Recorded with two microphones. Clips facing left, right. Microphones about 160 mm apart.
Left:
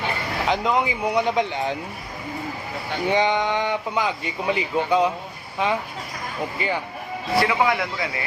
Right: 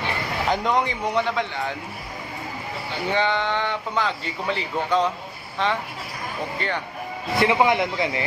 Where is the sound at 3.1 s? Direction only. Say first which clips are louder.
Left 2 dB; 15° left (ahead or behind).